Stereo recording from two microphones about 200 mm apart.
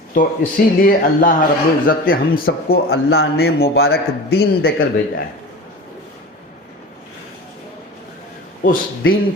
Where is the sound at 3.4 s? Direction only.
50° left (ahead or behind).